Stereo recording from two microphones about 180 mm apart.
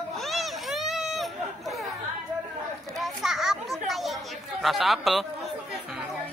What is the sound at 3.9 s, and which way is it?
Chatter, centre (ahead or behind).